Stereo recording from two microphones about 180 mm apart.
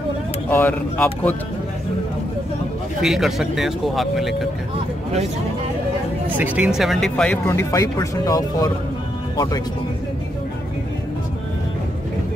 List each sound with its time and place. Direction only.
0.5 s speech: 10° left (ahead or behind)
3.0 s speech: centre (ahead or behind)
6.3 s speech: 10° right (ahead or behind)
7.4 s speech: 15° left (ahead or behind)